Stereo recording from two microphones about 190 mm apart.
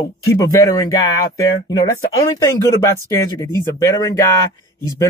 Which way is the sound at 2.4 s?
15° left (ahead or behind).